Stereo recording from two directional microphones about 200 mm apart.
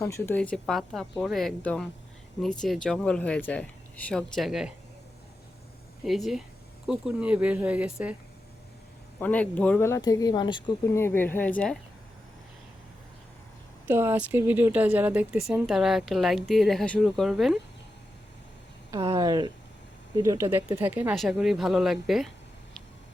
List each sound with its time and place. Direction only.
0.0 s speech: 15° left (ahead or behind)
6.1 s speech: centre (ahead or behind)
9.2 s speech: 5° left (ahead or behind)
11.0 s speech: 10° left (ahead or behind)
13.8 s speech: 10° right (ahead or behind)
18.9 s speech: 20° right (ahead or behind); by 22.3 s centre (ahead or behind)